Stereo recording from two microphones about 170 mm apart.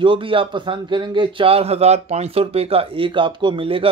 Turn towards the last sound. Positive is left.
turn(degrees=-30)  # may be behind; listen again after turning